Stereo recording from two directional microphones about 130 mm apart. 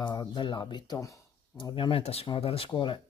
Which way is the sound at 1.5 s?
40° left (ahead or behind).